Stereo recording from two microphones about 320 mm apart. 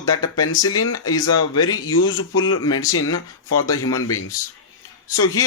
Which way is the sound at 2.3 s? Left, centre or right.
Centre.